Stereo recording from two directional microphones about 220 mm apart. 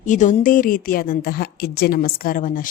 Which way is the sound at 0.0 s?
35° left (ahead or behind).